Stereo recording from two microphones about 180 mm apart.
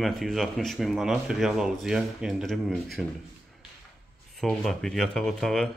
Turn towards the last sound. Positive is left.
turn(degrees=0)  # may be behind; listen again after turning